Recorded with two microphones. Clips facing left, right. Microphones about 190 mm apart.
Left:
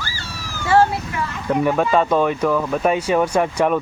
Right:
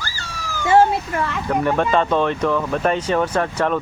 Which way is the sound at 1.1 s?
50° right (ahead or behind).